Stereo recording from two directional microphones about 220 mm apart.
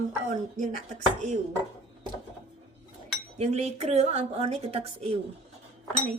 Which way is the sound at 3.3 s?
30° right (ahead or behind).